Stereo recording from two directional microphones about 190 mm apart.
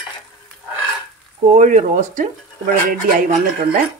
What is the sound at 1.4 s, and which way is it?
Speech, 40° right (ahead or behind).